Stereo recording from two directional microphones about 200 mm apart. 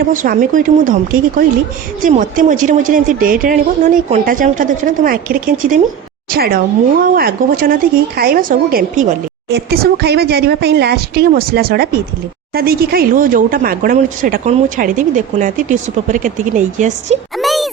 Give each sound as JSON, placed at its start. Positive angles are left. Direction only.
{"t": 0.0, "sound": "speech", "side_deg": -45}
{"t": 2.0, "sound": "speech", "side_deg": -40}
{"t": 17.3, "sound": "a sound", "side_deg": 0}